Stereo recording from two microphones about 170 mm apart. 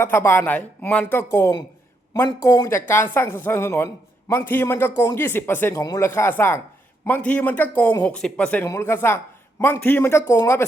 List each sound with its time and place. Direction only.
0.0 s a man's voice: 15° left (ahead or behind)
5.8 s a man's voice: 25° left (ahead or behind)